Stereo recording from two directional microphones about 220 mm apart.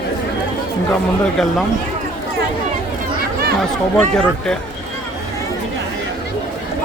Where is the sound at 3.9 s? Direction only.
5° left (ahead or behind).